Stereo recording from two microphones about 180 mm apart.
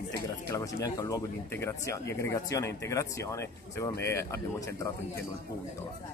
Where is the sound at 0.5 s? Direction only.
15° left (ahead or behind).